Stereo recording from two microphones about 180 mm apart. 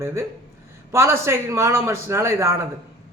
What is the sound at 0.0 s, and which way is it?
A woman's voice, 15° right (ahead or behind).